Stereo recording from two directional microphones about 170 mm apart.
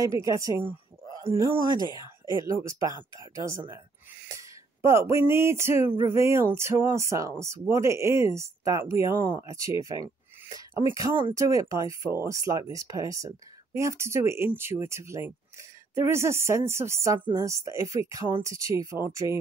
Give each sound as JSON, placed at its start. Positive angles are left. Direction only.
{"t": 0.0, "sound": "speech", "side_deg": -20}
{"t": 3.0, "sound": "speech", "side_deg": -15}